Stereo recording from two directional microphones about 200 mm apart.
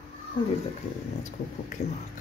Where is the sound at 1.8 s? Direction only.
55° left (ahead or behind).